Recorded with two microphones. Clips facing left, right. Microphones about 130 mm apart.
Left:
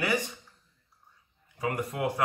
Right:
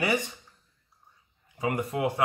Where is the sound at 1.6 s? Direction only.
20° right (ahead or behind).